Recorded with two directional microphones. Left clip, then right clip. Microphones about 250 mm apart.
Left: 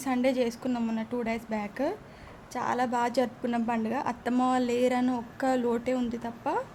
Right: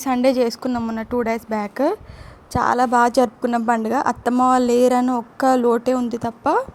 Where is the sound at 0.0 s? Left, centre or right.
Right.